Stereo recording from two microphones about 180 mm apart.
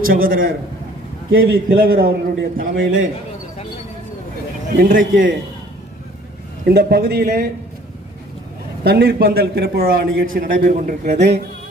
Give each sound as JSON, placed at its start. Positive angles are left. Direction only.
{"t": 0.1, "sound": "a man's voice", "side_deg": -50}
{"t": 4.8, "sound": "a man's voice", "side_deg": -50}
{"t": 6.7, "sound": "a man's voice", "side_deg": -65}
{"t": 8.8, "sound": "a man's voice", "side_deg": -65}